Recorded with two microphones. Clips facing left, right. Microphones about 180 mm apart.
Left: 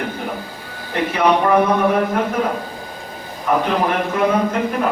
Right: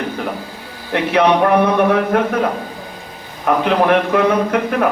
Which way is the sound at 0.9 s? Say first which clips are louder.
Right 2 dB; 65° right (ahead or behind).